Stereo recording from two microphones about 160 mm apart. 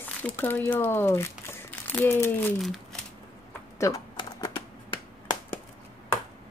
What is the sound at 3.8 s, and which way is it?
Typing, 20° left (ahead or behind).